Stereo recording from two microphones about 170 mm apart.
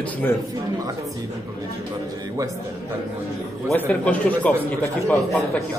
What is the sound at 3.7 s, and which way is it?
A man's voice, 10° left (ahead or behind).